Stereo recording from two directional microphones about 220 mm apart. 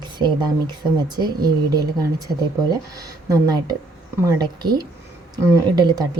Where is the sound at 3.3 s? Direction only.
15° right (ahead or behind).